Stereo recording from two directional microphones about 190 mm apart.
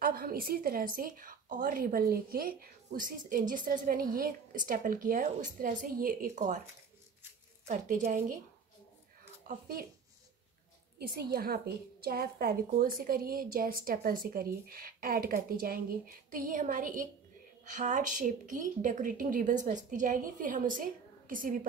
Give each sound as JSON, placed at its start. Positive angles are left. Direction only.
{"t": 0.0, "sound": "a woman's voice", "side_deg": -50}
{"t": 7.6, "sound": "a woman's voice", "side_deg": -45}
{"t": 9.5, "sound": "a woman's voice", "side_deg": -50}
{"t": 11.0, "sound": "a woman's voice", "side_deg": -55}